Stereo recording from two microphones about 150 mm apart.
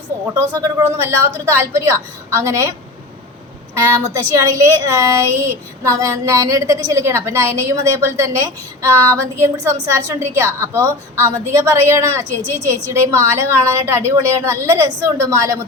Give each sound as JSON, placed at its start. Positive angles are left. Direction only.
{"t": 0.3, "sound": "a woman's voice", "side_deg": -15}
{"t": 4.0, "sound": "speech", "side_deg": -20}